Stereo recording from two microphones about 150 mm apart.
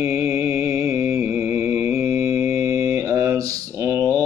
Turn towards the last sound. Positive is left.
turn(degrees=-20)  # may be behind; listen again after turning